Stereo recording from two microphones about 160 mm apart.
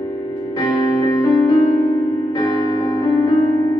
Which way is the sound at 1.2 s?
25° left (ahead or behind).